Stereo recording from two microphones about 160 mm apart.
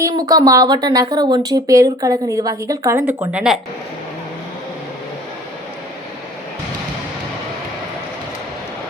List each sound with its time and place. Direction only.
0.0 s speech: 20° right (ahead or behind)
3.3 s speech: 5° right (ahead or behind)